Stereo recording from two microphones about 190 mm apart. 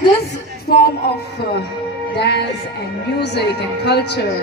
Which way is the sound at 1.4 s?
60° left (ahead or behind).